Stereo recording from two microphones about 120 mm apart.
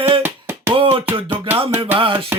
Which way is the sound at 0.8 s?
50° right (ahead or behind).